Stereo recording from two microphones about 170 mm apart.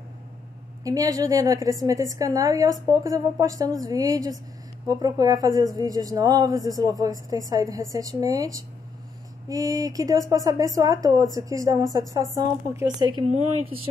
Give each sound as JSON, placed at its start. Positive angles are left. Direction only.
{"t": 0.8, "sound": "a woman's voice", "side_deg": -20}